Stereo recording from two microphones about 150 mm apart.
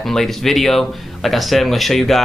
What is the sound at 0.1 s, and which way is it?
Speech, centre (ahead or behind).